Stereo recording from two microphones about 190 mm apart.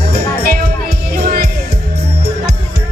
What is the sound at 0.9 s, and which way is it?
Music, 50° right (ahead or behind).